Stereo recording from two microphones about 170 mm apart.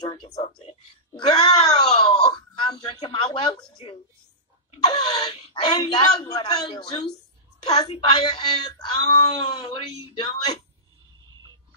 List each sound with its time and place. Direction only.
0.0 s speech: 20° left (ahead or behind)
1.2 s wail: 25° left (ahead or behind)
3.7 s a sound: 30° left (ahead or behind)
5.5 s speech: 25° left (ahead or behind)